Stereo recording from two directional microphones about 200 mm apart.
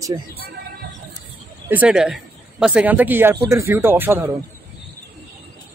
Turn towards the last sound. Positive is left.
turn(degrees=-10)  # may be behind; listen again after turning